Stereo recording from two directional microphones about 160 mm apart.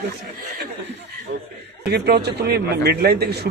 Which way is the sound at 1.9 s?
90° right.